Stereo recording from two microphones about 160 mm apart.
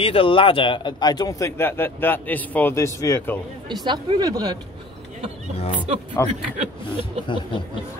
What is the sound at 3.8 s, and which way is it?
Speech, 30° right (ahead or behind).